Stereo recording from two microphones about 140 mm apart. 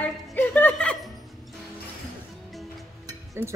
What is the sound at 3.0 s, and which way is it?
Music, 20° right (ahead or behind).